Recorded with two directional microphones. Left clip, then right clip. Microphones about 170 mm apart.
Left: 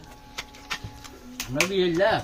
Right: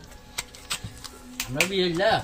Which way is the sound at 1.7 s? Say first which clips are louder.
Left 1 dB; centre (ahead or behind).